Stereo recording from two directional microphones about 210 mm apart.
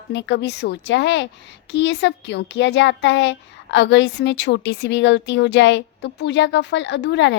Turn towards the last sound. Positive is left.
turn(degrees=55)  # may be behind; listen again after turning